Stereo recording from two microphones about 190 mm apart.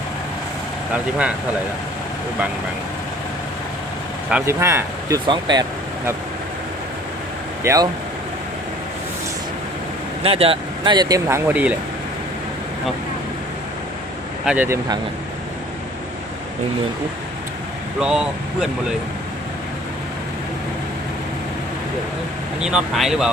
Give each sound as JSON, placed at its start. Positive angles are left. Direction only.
{"t": 4.3, "sound": "speech", "side_deg": -10}
{"t": 7.6, "sound": "speech", "side_deg": -15}
{"t": 10.2, "sound": "speech", "side_deg": -30}
{"t": 14.4, "sound": "speech", "side_deg": -10}
{"t": 18.0, "sound": "speech", "side_deg": -5}
{"t": 22.6, "sound": "speech", "side_deg": -5}